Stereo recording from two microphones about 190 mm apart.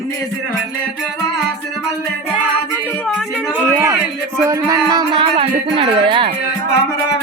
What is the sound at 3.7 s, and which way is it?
A man's voice, 15° right (ahead or behind).